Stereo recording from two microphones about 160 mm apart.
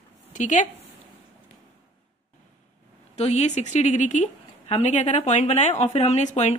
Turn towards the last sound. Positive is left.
turn(degrees=45)  # may be behind; listen again after turning